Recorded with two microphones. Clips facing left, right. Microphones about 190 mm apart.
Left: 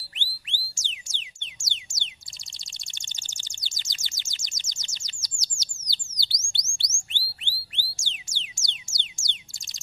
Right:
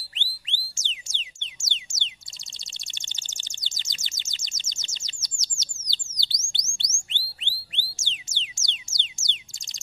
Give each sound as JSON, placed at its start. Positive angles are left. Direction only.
{"t": 0.1, "sound": "music", "side_deg": -25}
{"t": 2.9, "sound": "bird", "side_deg": -20}
{"t": 7.1, "sound": "music", "side_deg": -20}